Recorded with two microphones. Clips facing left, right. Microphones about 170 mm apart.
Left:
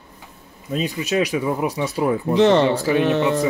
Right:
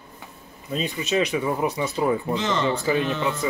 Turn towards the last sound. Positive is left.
turn(degrees=65)  # may be behind; listen again after turning